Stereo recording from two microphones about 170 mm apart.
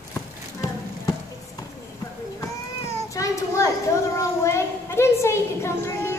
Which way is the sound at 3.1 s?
20° left (ahead or behind).